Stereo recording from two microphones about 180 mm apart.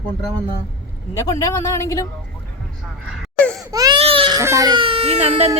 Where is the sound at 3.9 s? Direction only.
30° right (ahead or behind).